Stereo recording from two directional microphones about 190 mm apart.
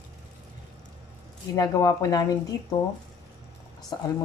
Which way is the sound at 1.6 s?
20° left (ahead or behind).